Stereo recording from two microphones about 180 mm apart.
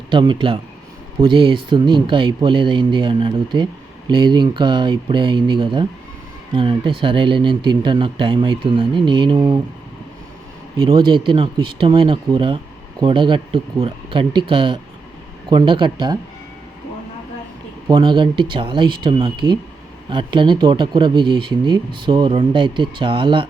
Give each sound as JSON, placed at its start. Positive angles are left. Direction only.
{"t": 0.1, "sound": "speech", "side_deg": -25}
{"t": 10.8, "sound": "speech", "side_deg": -25}
{"t": 17.8, "sound": "speech", "side_deg": -25}